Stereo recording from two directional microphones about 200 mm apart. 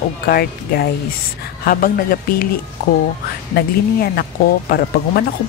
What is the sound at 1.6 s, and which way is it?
Speech, 45° left (ahead or behind).